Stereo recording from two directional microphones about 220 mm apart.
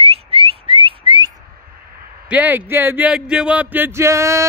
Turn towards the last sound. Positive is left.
turn(degrees=-15)  # may be behind; listen again after turning